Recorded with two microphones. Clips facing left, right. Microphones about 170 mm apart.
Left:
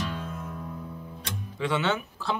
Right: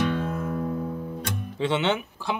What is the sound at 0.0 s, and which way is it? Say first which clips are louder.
Music: right 9 dB; 65° right (ahead or behind).